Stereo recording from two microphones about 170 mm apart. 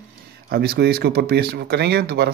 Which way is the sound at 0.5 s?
70° right (ahead or behind).